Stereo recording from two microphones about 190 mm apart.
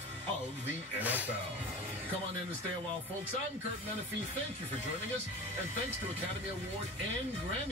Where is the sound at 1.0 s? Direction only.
10° right (ahead or behind).